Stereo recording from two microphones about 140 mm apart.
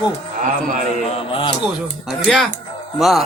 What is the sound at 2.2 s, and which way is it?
Speech, centre (ahead or behind).